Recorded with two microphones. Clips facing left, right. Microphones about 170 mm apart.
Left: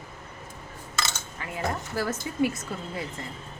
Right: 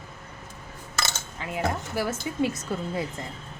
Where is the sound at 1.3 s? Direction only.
20° right (ahead or behind).